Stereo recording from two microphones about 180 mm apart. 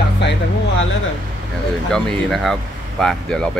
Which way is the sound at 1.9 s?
Centre (ahead or behind).